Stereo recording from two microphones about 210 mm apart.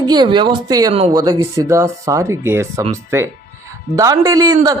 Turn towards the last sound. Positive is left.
turn(degrees=-15)  # may be behind; listen again after turning